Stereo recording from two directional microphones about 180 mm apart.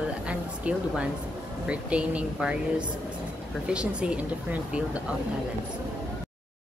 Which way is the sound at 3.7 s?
5° right (ahead or behind).